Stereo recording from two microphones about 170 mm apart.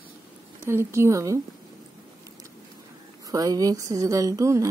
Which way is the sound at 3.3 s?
20° right (ahead or behind).